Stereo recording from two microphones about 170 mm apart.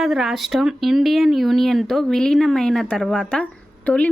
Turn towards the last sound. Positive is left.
turn(degrees=5)  # may be behind; listen again after turning